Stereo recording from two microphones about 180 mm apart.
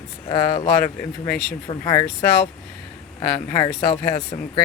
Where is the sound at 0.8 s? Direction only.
10° left (ahead or behind).